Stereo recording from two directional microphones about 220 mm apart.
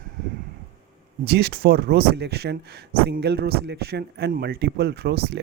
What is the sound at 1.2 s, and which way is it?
Speech, 45° right (ahead or behind).